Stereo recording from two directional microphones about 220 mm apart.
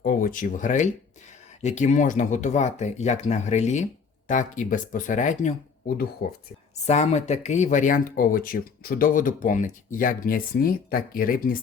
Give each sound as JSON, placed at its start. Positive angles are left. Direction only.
{"t": 0.0, "sound": "speech", "side_deg": 40}
{"t": 6.8, "sound": "speech", "side_deg": 30}